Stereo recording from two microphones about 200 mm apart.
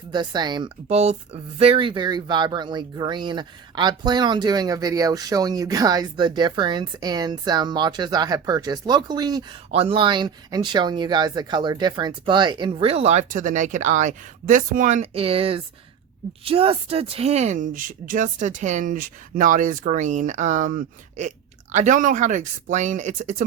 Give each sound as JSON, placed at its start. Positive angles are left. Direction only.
{"t": 0.1, "sound": "speech", "side_deg": -20}